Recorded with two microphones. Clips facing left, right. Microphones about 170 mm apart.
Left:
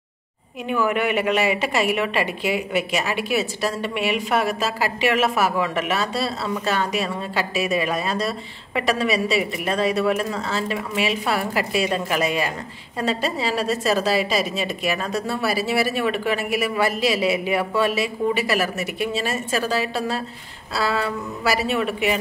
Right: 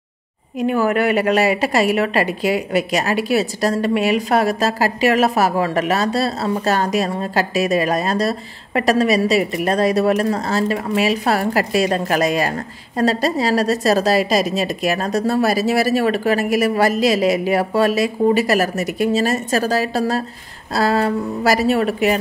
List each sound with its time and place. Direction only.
0.6 s a woman's voice: 40° right (ahead or behind)